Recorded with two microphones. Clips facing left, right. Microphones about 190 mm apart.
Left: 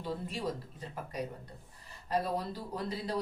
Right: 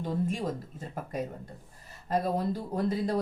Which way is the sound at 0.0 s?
45° right (ahead or behind).